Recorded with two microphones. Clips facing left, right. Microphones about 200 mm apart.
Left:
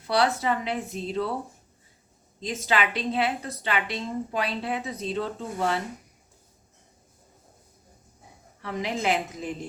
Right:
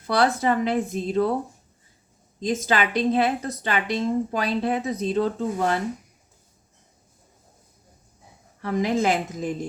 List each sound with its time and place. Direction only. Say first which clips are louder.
0.1 s a woman's voice: right 3 dB; 45° right (ahead or behind)
2.4 s a woman's voice: right 4 dB; 45° right (ahead or behind)
8.6 s a woman's voice: right 6 dB; 45° right (ahead or behind)